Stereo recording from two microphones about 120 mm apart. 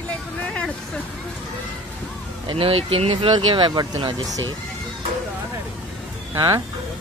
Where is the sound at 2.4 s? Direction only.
50° right (ahead or behind); by 4.4 s 35° right (ahead or behind).